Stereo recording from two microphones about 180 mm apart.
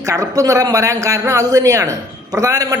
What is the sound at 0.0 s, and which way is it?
A man's voice, 20° right (ahead or behind).